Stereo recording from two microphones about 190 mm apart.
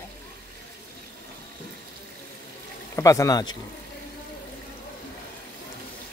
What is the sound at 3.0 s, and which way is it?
Speech, 15° left (ahead or behind).